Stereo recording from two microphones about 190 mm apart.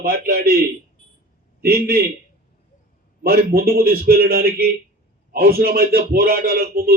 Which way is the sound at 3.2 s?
50° right (ahead or behind).